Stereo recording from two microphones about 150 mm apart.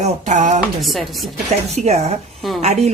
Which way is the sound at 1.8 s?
45° right (ahead or behind).